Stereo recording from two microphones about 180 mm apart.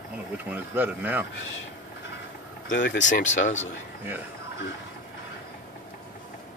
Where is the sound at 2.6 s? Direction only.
45° left (ahead or behind).